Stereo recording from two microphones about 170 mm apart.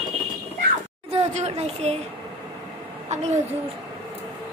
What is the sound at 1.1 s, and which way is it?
Speech, 40° right (ahead or behind).